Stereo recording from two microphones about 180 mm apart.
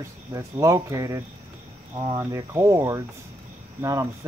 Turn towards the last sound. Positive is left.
turn(degrees=-15)  # may be behind; listen again after turning